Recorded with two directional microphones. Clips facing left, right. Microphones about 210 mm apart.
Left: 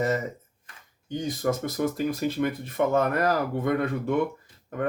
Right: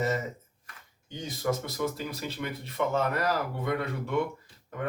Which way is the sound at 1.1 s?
50° left (ahead or behind).